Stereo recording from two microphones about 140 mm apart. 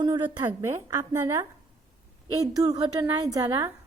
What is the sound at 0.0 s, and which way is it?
A woman's voice, 30° right (ahead or behind).